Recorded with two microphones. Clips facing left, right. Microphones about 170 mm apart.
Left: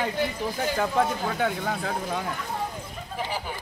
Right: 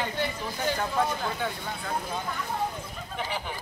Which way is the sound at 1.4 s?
90° left.